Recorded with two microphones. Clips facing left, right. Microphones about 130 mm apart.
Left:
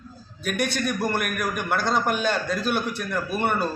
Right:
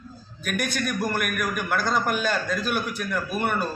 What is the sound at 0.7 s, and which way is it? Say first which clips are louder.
A man's voice: left 1 dB; centre (ahead or behind).